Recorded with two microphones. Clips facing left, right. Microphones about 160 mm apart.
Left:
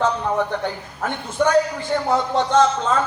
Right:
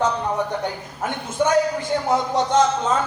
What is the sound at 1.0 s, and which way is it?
Speech, 15° right (ahead or behind).